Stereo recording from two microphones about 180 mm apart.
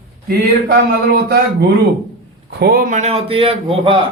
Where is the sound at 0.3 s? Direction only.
60° right (ahead or behind).